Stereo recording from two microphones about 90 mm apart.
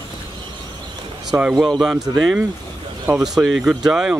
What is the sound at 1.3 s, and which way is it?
Speech, 35° right (ahead or behind).